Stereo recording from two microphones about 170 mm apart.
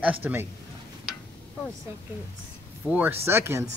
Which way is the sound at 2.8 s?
10° right (ahead or behind).